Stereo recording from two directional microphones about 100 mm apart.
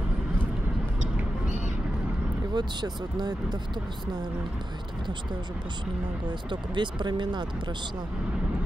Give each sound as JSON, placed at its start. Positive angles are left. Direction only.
{"t": 2.5, "sound": "speech", "side_deg": -45}
{"t": 6.2, "sound": "speech", "side_deg": -50}